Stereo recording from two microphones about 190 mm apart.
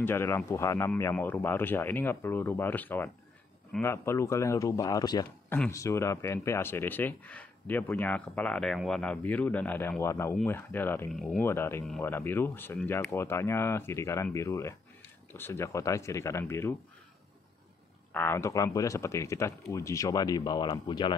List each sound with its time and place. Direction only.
0.0 s speech: 10° left (ahead or behind)
18.1 s speech: 10° left (ahead or behind)